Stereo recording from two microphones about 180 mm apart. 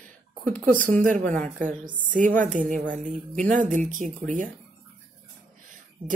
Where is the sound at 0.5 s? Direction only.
45° right (ahead or behind).